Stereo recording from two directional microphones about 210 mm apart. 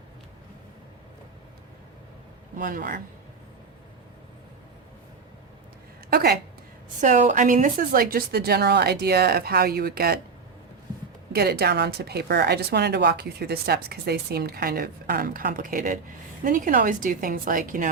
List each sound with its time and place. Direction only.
2.6 s a woman's voice: 40° right (ahead or behind)
6.1 s a woman's voice: 45° right (ahead or behind)
7.0 s speech: 35° right (ahead or behind)
11.3 s a woman's voice: 50° right (ahead or behind)